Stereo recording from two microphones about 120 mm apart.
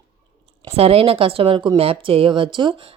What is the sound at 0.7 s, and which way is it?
Speech, 55° right (ahead or behind).